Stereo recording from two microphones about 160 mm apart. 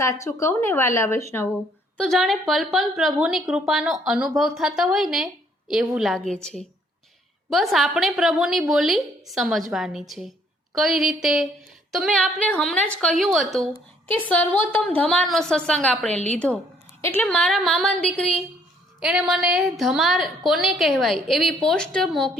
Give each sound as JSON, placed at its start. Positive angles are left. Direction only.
{"t": 0.0, "sound": "a woman's voice", "side_deg": 20}
{"t": 2.0, "sound": "a woman's voice", "side_deg": 0}
{"t": 17.2, "sound": "a woman's voice", "side_deg": 5}
{"t": 18.9, "sound": "a woman's voice", "side_deg": -5}